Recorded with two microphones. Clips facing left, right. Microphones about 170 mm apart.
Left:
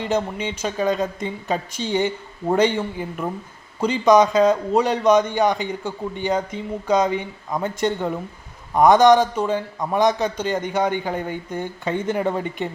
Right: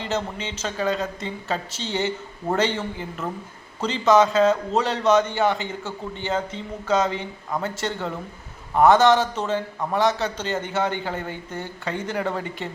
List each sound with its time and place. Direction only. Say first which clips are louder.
0.0 s a man's voice: left 4 dB; 15° left (ahead or behind)